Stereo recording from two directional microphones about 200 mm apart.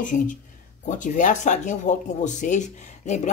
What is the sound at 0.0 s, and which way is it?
Speech, 40° left (ahead or behind).